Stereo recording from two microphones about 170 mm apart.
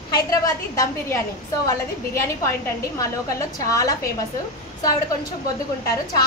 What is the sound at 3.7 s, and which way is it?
Speech, 20° left (ahead or behind).